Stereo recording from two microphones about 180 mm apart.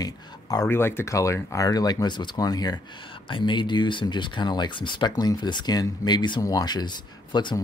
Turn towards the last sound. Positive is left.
turn(degrees=25)  # may be behind; listen again after turning